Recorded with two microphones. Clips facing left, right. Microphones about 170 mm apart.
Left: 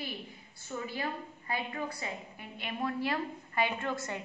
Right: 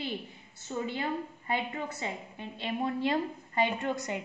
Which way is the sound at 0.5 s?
25° right (ahead or behind).